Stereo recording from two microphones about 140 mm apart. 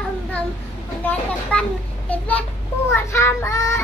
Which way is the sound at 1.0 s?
10° left (ahead or behind).